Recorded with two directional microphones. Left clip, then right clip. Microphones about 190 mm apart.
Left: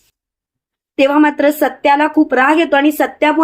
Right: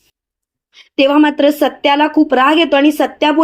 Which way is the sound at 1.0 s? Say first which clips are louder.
Right 1 dB; 20° right (ahead or behind).